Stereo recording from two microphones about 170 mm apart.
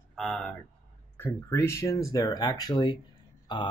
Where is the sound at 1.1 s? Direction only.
15° left (ahead or behind).